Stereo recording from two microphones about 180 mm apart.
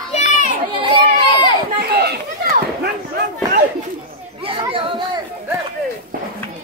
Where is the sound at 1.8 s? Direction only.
60° right (ahead or behind).